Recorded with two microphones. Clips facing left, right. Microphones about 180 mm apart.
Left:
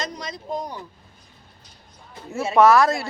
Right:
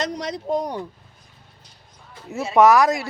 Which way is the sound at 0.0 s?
70° right (ahead or behind).